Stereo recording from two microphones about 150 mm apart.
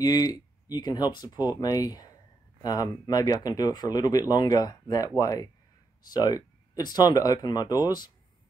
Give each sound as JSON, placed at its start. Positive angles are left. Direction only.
{"t": 0.0, "sound": "speech", "side_deg": 25}